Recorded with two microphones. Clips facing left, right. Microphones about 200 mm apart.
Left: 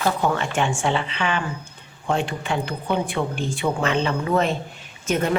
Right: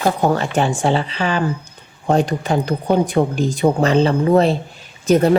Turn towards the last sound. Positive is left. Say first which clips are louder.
# right 9 dB
turn(degrees=-35)  # may be behind; listen again after turning